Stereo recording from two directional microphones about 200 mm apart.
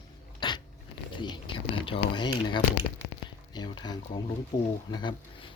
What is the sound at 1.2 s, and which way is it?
Speech, 25° left (ahead or behind).